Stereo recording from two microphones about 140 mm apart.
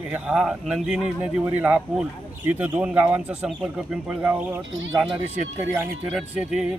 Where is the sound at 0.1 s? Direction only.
5° right (ahead or behind).